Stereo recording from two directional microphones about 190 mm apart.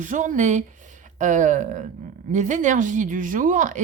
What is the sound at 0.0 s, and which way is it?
Speech, 40° right (ahead or behind).